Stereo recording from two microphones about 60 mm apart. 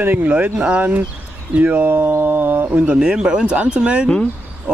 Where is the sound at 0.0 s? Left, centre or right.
Right.